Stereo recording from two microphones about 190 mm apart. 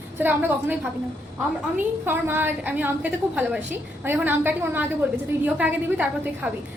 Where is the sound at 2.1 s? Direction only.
10° right (ahead or behind).